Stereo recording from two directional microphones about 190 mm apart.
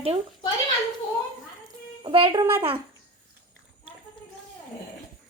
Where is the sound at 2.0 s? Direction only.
25° right (ahead or behind).